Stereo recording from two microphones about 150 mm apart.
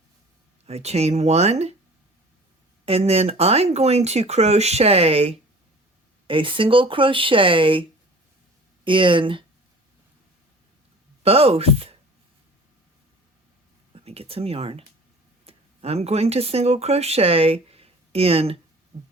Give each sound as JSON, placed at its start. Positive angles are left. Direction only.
{"t": 0.6, "sound": "speech", "side_deg": -45}
{"t": 2.8, "sound": "speech", "side_deg": -40}
{"t": 11.2, "sound": "speech", "side_deg": -40}
{"t": 13.9, "sound": "speech", "side_deg": -40}